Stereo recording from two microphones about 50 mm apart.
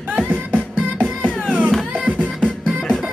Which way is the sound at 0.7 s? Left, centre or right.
Centre.